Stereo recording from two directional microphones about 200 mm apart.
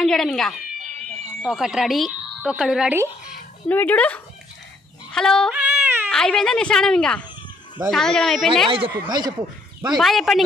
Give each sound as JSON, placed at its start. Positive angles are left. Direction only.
{"t": 0.0, "sound": "speech", "side_deg": 0}
{"t": 3.6, "sound": "speech", "side_deg": 10}
{"t": 5.6, "sound": "a sound", "side_deg": -10}
{"t": 6.0, "sound": "speech", "side_deg": 5}
{"t": 8.6, "sound": "speech", "side_deg": -25}
{"t": 9.9, "sound": "speech", "side_deg": 0}